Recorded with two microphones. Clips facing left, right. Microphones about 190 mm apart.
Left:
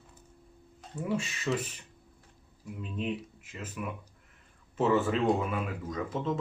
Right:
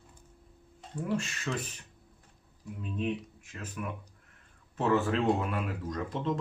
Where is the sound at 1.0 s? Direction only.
5° left (ahead or behind).